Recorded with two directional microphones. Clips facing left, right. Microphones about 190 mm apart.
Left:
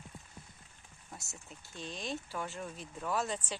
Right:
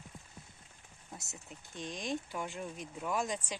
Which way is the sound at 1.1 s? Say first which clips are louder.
Right 1 dB; 20° right (ahead or behind).